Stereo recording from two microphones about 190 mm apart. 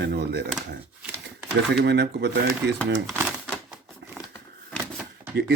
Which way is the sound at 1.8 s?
65° right (ahead or behind).